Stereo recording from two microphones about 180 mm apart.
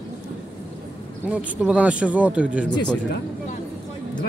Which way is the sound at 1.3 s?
5° right (ahead or behind).